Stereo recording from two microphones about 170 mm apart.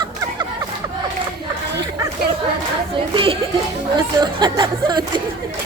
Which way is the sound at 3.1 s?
30° right (ahead or behind).